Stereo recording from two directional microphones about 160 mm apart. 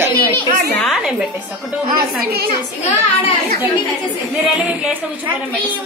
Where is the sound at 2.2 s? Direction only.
75° right (ahead or behind).